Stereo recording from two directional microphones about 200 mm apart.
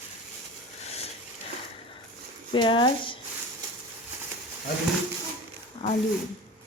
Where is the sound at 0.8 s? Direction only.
30° left (ahead or behind).